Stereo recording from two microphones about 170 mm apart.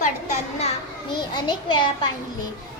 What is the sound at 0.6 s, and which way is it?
Children playing, 30° left (ahead or behind).